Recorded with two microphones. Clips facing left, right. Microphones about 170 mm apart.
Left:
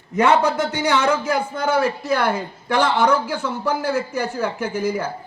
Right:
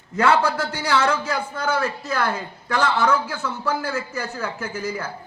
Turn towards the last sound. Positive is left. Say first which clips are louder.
# left 6 dB
turn(degrees=15)  # may be behind; listen again after turning